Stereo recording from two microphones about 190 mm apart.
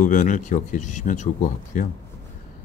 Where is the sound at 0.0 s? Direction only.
40° left (ahead or behind).